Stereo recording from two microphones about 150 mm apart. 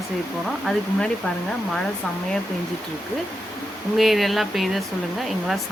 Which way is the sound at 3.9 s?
Centre (ahead or behind).